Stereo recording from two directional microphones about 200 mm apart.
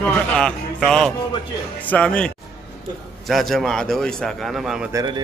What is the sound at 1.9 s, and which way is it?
A man's voice, 5° left (ahead or behind).